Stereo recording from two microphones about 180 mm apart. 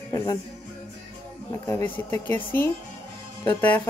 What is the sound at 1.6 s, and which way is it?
Speech, 10° left (ahead or behind).